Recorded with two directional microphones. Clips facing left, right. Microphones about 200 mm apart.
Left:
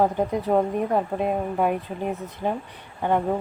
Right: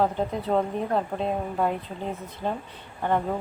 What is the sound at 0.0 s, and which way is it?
A woman's voice, 15° left (ahead or behind).